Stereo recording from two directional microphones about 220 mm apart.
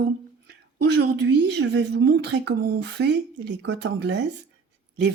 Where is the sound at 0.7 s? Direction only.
50° right (ahead or behind).